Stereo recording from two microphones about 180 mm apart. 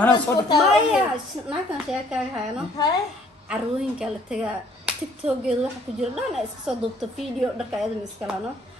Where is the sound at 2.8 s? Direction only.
20° left (ahead or behind).